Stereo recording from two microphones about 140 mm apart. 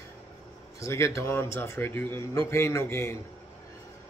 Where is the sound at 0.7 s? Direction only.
20° left (ahead or behind).